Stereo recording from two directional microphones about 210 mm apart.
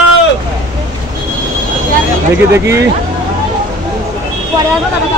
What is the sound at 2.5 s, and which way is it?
Speech, 15° right (ahead or behind).